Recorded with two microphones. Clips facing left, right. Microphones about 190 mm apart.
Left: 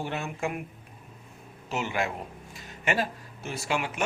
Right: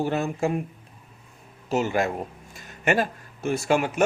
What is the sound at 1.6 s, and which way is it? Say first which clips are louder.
A man's voice: right 6 dB; 40° right (ahead or behind).